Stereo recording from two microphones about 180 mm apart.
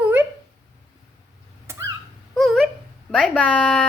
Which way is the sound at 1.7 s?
15° right (ahead or behind).